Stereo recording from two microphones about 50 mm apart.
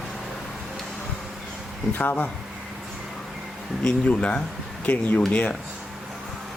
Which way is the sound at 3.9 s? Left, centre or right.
Left.